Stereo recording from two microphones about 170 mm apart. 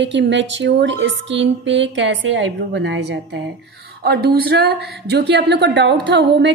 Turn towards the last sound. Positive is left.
turn(degrees=-90)